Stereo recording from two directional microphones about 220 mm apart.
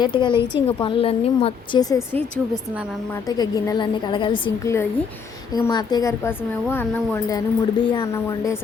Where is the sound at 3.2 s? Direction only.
15° left (ahead or behind).